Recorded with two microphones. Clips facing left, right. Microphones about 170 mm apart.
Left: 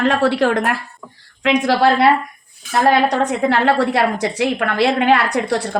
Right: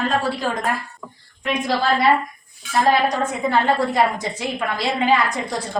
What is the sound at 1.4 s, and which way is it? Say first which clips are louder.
A woman's voice: left 6 dB; 85° left.